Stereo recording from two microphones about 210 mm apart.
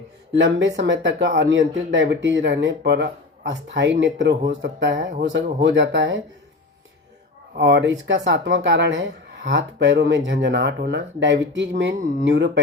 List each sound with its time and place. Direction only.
0.3 s speech: 60° right (ahead or behind)
7.5 s speech: 55° right (ahead or behind)